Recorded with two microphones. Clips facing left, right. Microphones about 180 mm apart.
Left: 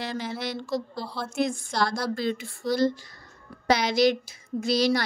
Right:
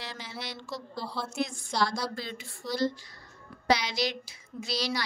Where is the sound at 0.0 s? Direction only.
50° left (ahead or behind).